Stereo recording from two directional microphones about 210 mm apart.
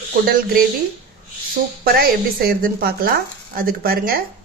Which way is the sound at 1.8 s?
45° right (ahead or behind).